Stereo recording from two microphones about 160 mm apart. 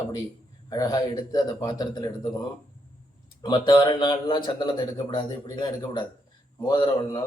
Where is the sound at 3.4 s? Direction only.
30° left (ahead or behind).